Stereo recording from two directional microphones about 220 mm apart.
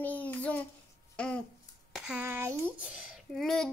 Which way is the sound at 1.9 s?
5° right (ahead or behind).